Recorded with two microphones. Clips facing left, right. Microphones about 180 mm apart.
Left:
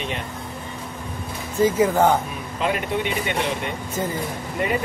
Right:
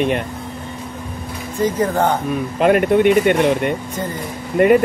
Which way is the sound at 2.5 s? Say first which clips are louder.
Right 10 dB; 55° right (ahead or behind).